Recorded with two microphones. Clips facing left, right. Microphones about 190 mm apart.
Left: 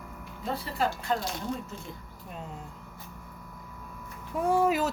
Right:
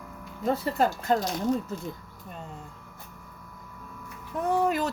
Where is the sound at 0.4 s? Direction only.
45° right (ahead or behind).